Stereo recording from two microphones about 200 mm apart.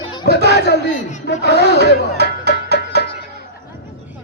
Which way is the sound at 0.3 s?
55° left (ahead or behind).